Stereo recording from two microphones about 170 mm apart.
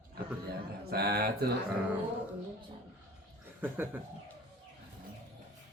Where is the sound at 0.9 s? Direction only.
65° right (ahead or behind).